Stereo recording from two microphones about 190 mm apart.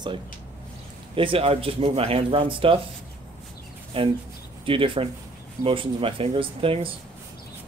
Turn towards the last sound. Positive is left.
turn(degrees=-30)  # may be behind; listen again after turning